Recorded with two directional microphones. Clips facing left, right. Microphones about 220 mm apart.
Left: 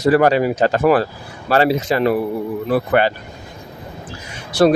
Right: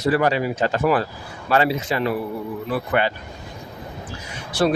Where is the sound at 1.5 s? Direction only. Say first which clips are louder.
Left 4 dB; 35° left (ahead or behind).